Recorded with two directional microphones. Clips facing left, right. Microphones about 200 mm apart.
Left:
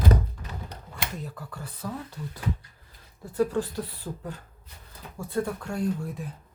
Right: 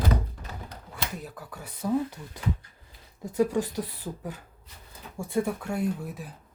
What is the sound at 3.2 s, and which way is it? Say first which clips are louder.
Speech: right 1 dB; 15° right (ahead or behind).